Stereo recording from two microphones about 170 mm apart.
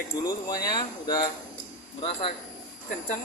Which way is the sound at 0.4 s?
20° left (ahead or behind).